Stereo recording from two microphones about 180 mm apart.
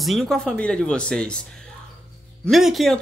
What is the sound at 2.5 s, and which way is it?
Speech, centre (ahead or behind).